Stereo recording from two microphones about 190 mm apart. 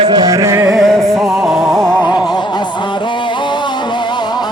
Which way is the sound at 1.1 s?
10° right (ahead or behind).